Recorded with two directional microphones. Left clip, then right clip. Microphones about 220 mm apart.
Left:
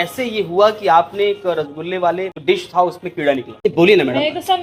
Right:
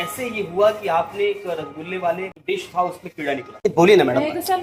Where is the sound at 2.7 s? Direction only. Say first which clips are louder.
Left 6 dB; 40° left (ahead or behind).